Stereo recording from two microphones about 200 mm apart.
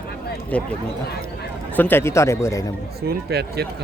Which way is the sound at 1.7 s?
10° left (ahead or behind).